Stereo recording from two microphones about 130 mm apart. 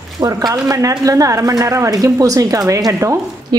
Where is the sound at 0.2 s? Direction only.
30° right (ahead or behind).